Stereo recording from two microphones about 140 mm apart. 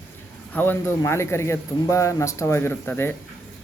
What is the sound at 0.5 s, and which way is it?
A man's voice, 15° left (ahead or behind).